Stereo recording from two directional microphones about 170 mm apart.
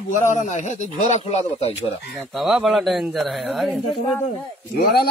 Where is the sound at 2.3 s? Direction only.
Centre (ahead or behind).